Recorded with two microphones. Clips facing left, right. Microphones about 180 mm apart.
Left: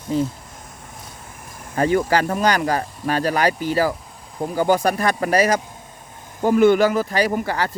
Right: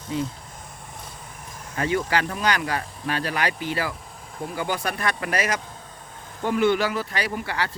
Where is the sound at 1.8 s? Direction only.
40° left (ahead or behind).